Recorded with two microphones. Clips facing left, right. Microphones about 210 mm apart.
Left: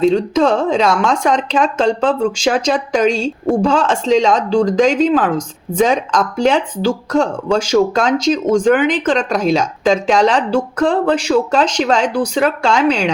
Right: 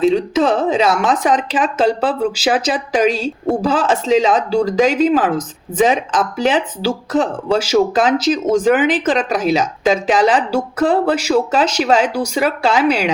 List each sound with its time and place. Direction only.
0.0 s speech: 5° right (ahead or behind)